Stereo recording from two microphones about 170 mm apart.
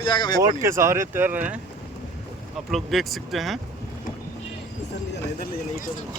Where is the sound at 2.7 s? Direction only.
Centre (ahead or behind).